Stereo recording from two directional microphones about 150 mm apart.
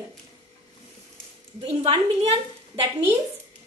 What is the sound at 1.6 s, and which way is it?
Speech, 45° right (ahead or behind).